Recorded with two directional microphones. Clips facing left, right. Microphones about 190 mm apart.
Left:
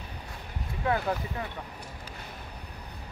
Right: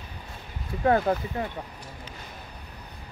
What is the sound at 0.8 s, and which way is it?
Speech, 40° right (ahead or behind).